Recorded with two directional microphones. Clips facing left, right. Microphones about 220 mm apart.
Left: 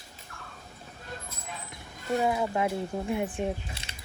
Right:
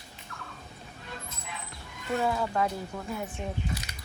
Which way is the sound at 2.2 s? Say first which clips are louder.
Left 1 dB; 15° left (ahead or behind).